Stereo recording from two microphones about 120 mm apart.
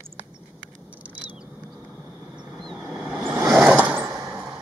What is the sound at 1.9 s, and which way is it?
Vehicle, 20° right (ahead or behind).